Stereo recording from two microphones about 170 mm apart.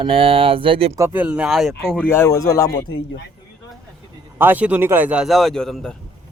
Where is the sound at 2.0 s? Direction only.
15° left (ahead or behind).